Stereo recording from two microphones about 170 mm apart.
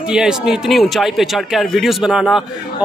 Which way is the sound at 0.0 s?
5° right (ahead or behind).